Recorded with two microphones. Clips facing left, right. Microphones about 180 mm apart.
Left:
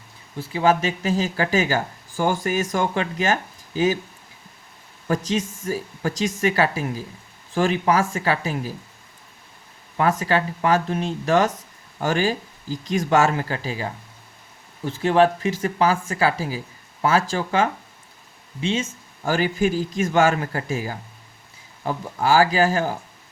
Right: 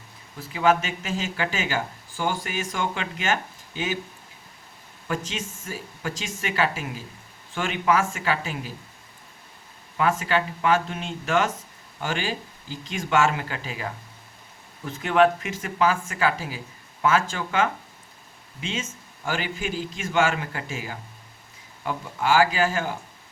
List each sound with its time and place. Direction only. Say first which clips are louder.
0.3 s speech: left 2 dB; 30° left (ahead or behind)
5.0 s speech: left 7 dB; 40° left (ahead or behind)
10.0 s speech: left 3 dB; 40° left (ahead or behind)